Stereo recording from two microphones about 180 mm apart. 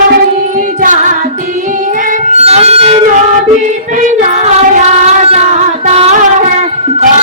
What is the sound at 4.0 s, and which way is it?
Female singing, 40° right (ahead or behind).